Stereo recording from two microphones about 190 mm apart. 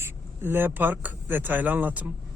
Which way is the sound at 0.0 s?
10° right (ahead or behind).